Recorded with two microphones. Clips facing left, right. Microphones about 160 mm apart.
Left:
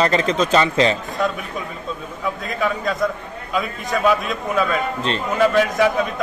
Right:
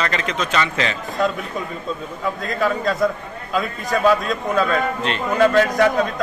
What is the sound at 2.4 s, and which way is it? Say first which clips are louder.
A man's voice: right 3 dB; centre (ahead or behind).